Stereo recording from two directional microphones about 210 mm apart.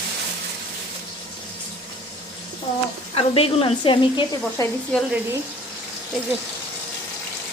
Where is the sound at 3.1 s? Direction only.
25° left (ahead or behind).